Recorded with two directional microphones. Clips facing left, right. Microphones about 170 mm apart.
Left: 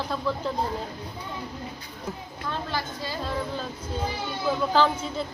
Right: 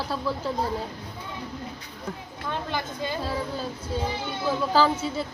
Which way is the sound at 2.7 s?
20° right (ahead or behind).